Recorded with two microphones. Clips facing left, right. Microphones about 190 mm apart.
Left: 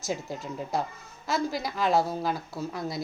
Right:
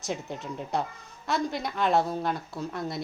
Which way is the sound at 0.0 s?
Centre (ahead or behind).